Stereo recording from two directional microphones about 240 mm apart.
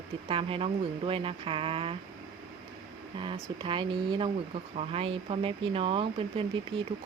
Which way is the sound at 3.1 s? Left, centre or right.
Right.